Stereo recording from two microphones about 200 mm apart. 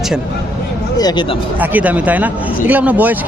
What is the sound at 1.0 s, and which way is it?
Speech, 20° left (ahead or behind).